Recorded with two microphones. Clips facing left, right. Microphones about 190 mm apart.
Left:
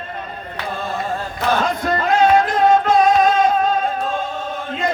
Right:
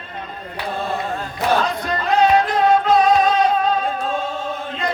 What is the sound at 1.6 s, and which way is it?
Music, 50° left (ahead or behind).